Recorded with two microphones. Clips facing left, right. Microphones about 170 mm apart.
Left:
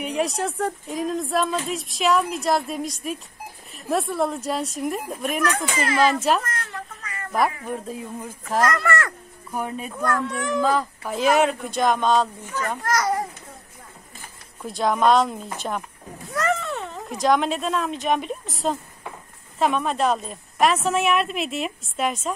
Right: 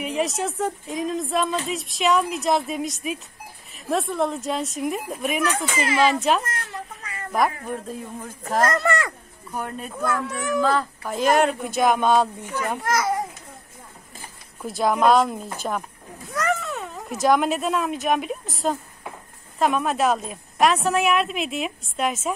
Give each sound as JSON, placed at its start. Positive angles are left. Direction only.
{"t": 0.0, "sound": "a woman's voice", "side_deg": 0}
{"t": 6.4, "sound": "a sound", "side_deg": -30}
{"t": 7.6, "sound": "a woman's voice", "side_deg": 5}
{"t": 8.6, "sound": "speech", "side_deg": -25}
{"t": 9.5, "sound": "a woman's voice", "side_deg": 5}
{"t": 10.6, "sound": "a woman's voice", "side_deg": 10}
{"t": 14.6, "sound": "a woman's voice", "side_deg": -5}